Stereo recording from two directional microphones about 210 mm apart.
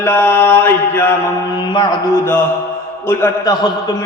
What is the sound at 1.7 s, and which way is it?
Mantra, 25° left (ahead or behind).